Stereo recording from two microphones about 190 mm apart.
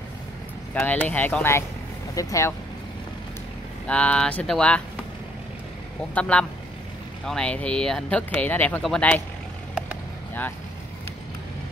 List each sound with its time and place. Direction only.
0.7 s speech: 10° left (ahead or behind)
3.8 s speech: 5° left (ahead or behind)
6.1 s speech: 5° left (ahead or behind)